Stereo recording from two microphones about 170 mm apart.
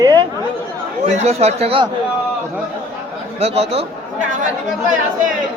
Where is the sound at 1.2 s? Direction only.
40° right (ahead or behind).